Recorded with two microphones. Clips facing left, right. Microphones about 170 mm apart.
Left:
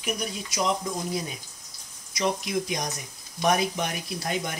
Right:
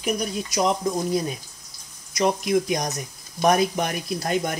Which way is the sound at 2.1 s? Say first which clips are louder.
Right 6 dB; 50° right (ahead or behind).